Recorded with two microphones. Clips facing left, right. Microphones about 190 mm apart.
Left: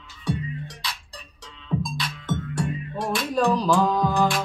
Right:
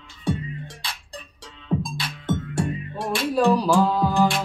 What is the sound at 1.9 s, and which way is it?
Music, 30° right (ahead or behind).